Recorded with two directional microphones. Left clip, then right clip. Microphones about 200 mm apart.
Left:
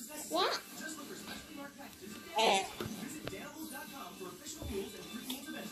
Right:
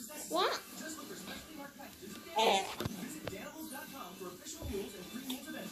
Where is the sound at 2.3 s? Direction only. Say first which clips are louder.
Even; 5° left (ahead or behind).